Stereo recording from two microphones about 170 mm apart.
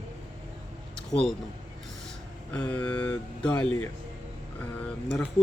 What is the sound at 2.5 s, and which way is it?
Speech, 10° left (ahead or behind).